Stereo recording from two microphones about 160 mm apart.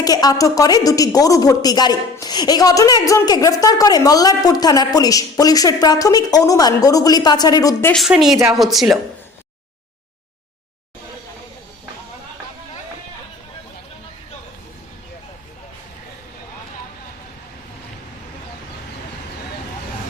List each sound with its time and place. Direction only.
0.0 s speech: 25° left (ahead or behind)
7.9 s speech: centre (ahead or behind)